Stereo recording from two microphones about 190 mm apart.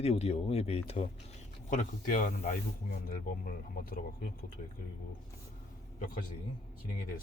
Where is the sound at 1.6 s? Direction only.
40° left (ahead or behind).